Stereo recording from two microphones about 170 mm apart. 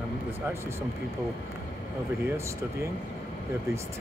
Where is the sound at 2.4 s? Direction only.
15° right (ahead or behind).